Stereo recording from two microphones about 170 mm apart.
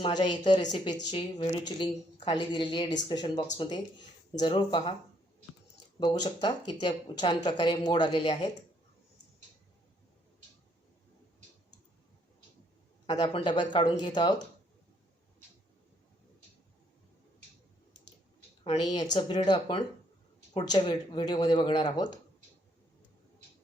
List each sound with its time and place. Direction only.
0.0 s a woman's voice: 25° left (ahead or behind)
6.0 s a woman's voice: 25° left (ahead or behind)
13.1 s a woman's voice: 25° left (ahead or behind)
18.6 s a woman's voice: 30° left (ahead or behind)